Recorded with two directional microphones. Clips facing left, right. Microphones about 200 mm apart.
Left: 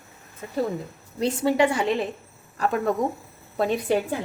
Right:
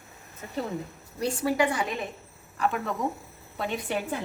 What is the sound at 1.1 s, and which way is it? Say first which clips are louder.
Speech: left 4 dB; 25° left (ahead or behind).